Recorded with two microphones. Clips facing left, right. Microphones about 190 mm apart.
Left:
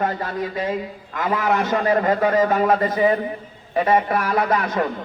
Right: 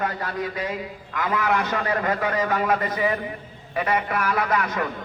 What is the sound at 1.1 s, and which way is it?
A man's voice, 25° left (ahead or behind).